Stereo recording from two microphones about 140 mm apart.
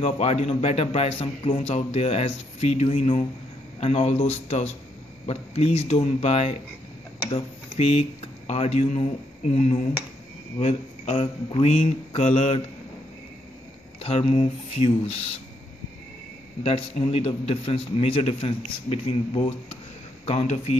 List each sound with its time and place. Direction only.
0.0 s a man's voice: 50° left (ahead or behind)
14.0 s a man's voice: 50° left (ahead or behind)
16.6 s a man's voice: 45° left (ahead or behind)